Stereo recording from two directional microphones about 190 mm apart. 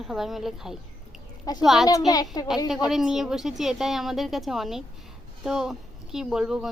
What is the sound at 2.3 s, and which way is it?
Speech, 20° left (ahead or behind).